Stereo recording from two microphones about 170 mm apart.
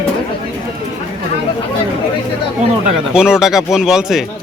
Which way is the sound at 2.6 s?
45° right (ahead or behind).